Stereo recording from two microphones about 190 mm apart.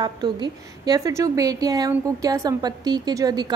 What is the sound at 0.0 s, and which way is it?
A woman's voice, 25° right (ahead or behind).